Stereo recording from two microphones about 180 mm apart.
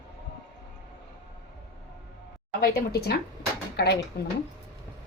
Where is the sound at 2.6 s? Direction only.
60° left (ahead or behind).